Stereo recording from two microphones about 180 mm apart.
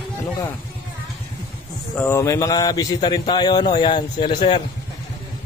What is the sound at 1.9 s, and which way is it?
Speech, 15° left (ahead or behind).